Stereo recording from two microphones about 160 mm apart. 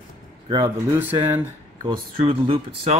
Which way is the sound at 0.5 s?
30° right (ahead or behind).